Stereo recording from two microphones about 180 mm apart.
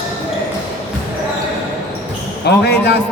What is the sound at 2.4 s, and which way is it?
Speech, 65° left (ahead or behind).